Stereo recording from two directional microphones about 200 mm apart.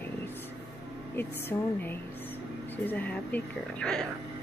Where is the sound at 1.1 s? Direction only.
10° left (ahead or behind).